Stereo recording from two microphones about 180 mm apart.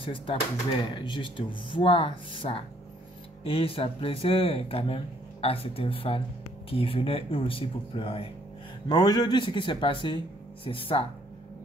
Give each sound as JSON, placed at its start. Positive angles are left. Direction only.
{"t": 0.0, "sound": "speech", "side_deg": 30}